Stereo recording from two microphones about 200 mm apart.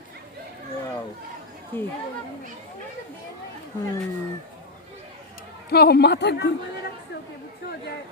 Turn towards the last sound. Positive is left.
turn(degrees=60)  # may be behind; listen again after turning